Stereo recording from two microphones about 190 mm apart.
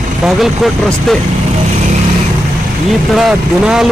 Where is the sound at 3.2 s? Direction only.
5° right (ahead or behind).